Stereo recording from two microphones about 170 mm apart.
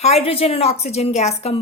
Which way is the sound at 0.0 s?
35° left (ahead or behind).